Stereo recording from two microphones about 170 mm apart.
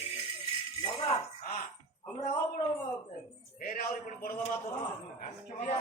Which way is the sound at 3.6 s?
55° left (ahead or behind).